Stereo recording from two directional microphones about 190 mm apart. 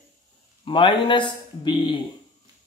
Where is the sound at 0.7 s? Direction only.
25° left (ahead or behind).